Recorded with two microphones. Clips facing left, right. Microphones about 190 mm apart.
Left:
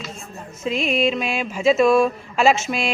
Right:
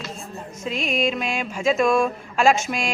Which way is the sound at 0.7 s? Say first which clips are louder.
Left 4 dB; 40° right (ahead or behind).